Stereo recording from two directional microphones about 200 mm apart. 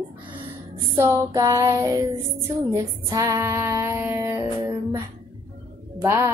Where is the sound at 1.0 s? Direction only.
15° right (ahead or behind).